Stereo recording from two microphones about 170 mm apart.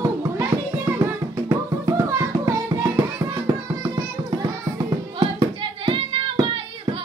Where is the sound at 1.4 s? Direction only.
20° right (ahead or behind).